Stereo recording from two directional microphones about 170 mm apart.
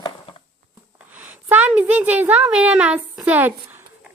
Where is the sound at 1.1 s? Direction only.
10° right (ahead or behind).